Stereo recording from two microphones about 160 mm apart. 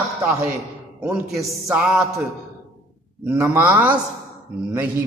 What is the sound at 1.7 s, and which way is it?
Music, 5° right (ahead or behind).